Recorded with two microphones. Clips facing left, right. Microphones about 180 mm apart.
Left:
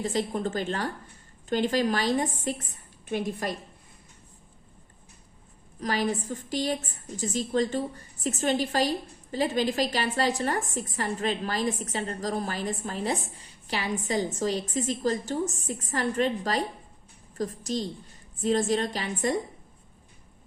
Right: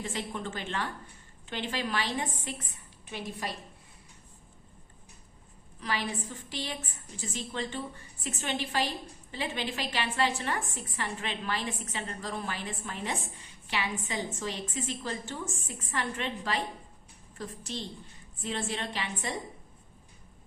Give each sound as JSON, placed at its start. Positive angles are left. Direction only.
{"t": 0.0, "sound": "a woman's voice", "side_deg": 40}
{"t": 5.8, "sound": "a woman's voice", "side_deg": 40}